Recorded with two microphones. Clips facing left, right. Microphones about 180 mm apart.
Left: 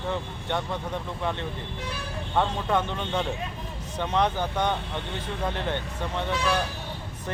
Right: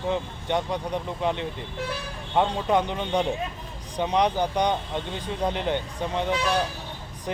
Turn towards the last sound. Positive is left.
turn(degrees=-15)  # may be behind; listen again after turning